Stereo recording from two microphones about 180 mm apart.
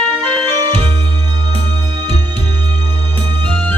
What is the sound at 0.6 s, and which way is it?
Music, 25° right (ahead or behind).